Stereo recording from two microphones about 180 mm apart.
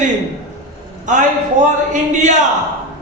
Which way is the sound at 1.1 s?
45° right (ahead or behind).